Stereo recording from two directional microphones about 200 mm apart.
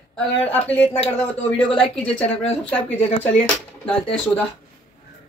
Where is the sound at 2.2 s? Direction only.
30° left (ahead or behind).